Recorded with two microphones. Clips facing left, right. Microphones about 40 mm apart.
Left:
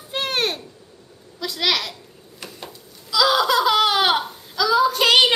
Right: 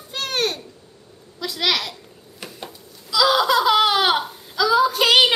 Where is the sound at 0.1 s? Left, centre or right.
Centre.